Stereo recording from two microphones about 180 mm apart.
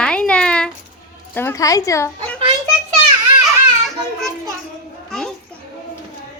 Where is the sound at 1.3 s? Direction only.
15° left (ahead or behind).